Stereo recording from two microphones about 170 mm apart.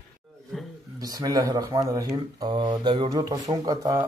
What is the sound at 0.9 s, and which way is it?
Speech, 20° right (ahead or behind).